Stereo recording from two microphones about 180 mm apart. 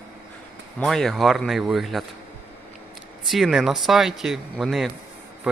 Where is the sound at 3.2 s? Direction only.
Centre (ahead or behind).